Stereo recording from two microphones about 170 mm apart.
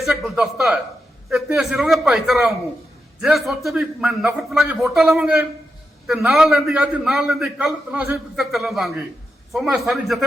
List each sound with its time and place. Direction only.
0.0 s a man's voice: centre (ahead or behind)